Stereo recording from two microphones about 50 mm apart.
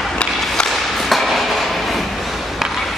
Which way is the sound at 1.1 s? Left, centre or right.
Centre.